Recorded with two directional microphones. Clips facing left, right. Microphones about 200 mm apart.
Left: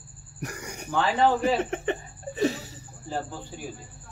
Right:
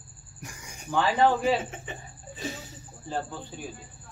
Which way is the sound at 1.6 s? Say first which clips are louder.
Left 10 dB; 70° left (ahead or behind).